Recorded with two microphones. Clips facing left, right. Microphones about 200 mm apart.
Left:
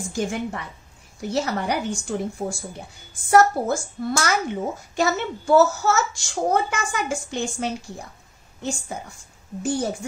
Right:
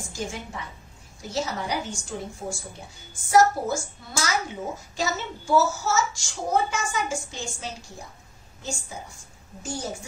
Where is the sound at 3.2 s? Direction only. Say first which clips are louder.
Left 3 dB; 60° left (ahead or behind).